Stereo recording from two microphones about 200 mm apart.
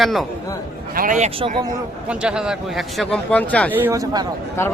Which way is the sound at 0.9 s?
40° right (ahead or behind).